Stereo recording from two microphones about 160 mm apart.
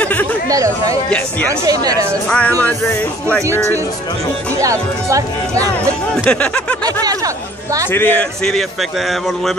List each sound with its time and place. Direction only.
0.0 s chatter: 10° left (ahead or behind)
1.5 s speech: 20° right (ahead or behind)
2.2 s speech: 10° left (ahead or behind)
4.6 s speech: 20° right (ahead or behind)
6.2 s a man's voice: 5° left (ahead or behind)
6.8 s speech: 25° right (ahead or behind)
7.9 s a man's voice: 10° left (ahead or behind)